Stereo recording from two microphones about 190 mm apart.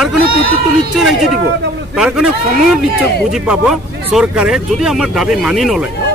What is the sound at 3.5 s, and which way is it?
A man's voice, 5° right (ahead or behind).